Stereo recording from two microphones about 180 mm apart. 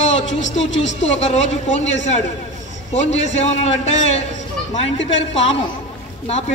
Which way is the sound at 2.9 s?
40° left (ahead or behind).